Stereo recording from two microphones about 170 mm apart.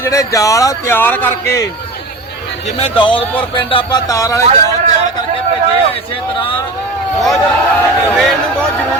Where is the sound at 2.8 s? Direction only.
30° left (ahead or behind).